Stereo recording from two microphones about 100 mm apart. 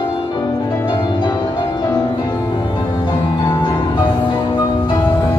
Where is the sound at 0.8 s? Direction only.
45° left (ahead or behind).